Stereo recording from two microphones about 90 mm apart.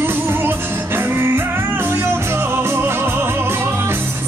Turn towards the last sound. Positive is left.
turn(degrees=-25)  # may be behind; listen again after turning